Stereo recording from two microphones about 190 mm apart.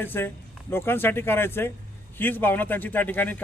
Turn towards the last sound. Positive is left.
turn(degrees=10)  # may be behind; listen again after turning